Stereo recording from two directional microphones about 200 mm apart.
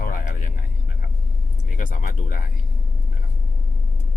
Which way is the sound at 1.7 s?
40° left (ahead or behind).